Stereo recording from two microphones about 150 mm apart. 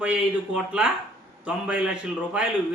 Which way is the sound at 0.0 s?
5° right (ahead or behind).